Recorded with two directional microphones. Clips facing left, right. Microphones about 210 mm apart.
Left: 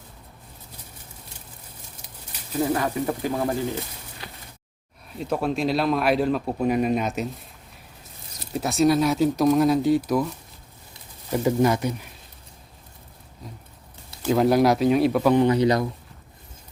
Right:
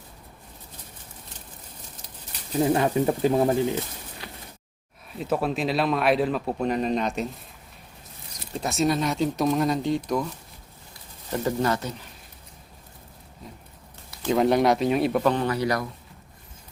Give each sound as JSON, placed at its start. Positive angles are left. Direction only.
{"t": 2.7, "sound": "speech", "side_deg": -25}
{"t": 5.1, "sound": "speech", "side_deg": 0}
{"t": 8.5, "sound": "speech", "side_deg": 0}
{"t": 11.3, "sound": "speech", "side_deg": 10}
{"t": 14.2, "sound": "speech", "side_deg": 5}
{"t": 15.3, "sound": "speech", "side_deg": 15}